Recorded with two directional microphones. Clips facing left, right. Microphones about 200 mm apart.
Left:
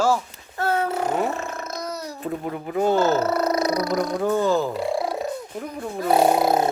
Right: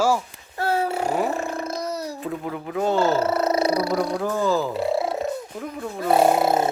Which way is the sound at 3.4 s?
30° right (ahead or behind).